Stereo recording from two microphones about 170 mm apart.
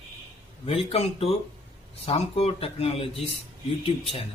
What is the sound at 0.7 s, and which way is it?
A man's voice, 35° left (ahead or behind).